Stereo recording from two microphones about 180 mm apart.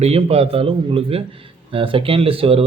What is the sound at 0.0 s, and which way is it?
A man's voice, 35° right (ahead or behind).